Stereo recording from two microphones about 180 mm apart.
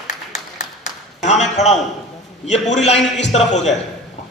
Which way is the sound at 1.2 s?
40° left (ahead or behind).